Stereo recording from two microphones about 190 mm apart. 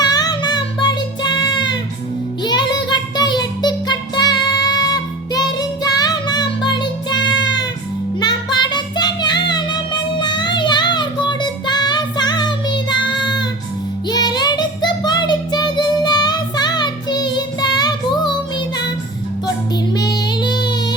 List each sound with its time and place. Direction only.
0.0 s child singing: 20° left (ahead or behind)
7.4 s music: 20° left (ahead or behind)
14.1 s child singing: 20° left (ahead or behind)
19.9 s child singing: 20° left (ahead or behind)